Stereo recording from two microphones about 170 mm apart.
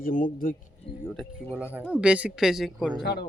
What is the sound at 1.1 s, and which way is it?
Speech, 5° right (ahead or behind).